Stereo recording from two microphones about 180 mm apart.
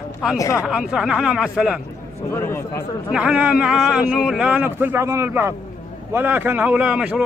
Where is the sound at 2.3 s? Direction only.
15° left (ahead or behind).